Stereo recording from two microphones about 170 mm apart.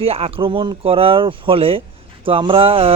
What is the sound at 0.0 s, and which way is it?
Speech, 35° right (ahead or behind).